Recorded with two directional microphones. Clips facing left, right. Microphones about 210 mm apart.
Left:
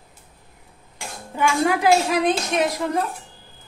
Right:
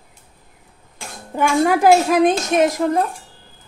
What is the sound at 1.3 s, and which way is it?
A woman's voice, 50° right (ahead or behind).